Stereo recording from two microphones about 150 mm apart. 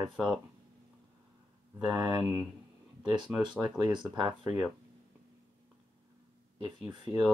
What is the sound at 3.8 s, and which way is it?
Speech, 30° right (ahead or behind).